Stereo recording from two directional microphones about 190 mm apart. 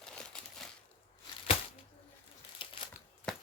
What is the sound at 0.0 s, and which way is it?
Crumpling, 5° left (ahead or behind).